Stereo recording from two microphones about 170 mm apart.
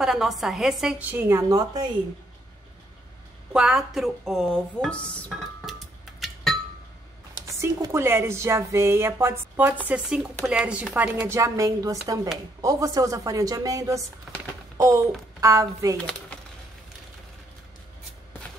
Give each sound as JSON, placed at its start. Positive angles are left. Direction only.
{"t": 0.0, "sound": "speech", "side_deg": 0}
{"t": 1.5, "sound": "a woman's voice", "side_deg": -20}
{"t": 3.5, "sound": "speech", "side_deg": 0}
{"t": 5.3, "sound": "music", "side_deg": 0}
{"t": 7.3, "sound": "a woman's voice", "side_deg": -20}